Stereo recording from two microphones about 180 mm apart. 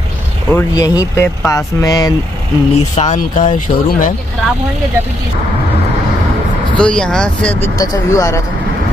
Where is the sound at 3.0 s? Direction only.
40° left (ahead or behind).